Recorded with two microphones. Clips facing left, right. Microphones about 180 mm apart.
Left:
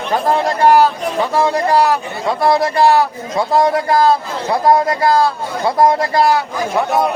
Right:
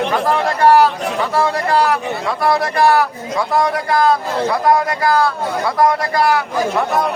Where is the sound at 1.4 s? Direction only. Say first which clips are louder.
Left 2 dB; 20° left (ahead or behind).